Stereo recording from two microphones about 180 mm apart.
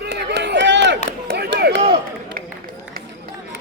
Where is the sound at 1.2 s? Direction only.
70° right (ahead or behind).